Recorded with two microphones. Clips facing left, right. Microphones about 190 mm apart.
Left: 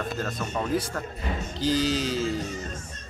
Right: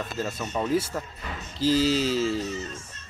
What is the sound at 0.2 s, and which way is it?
Speech, 5° right (ahead or behind).